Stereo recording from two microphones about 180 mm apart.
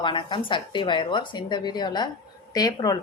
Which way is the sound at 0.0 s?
25° left (ahead or behind).